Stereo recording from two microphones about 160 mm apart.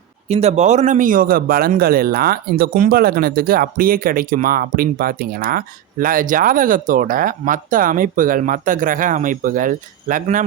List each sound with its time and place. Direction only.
0.3 s a man's voice: 40° right (ahead or behind)